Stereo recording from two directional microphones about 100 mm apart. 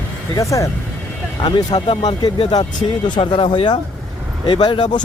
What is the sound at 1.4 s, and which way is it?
Speech, 50° left (ahead or behind).